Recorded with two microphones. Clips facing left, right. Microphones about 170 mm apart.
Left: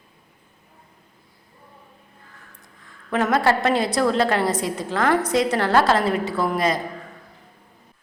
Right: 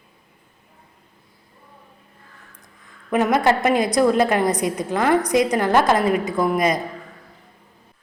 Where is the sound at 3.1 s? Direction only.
15° right (ahead or behind).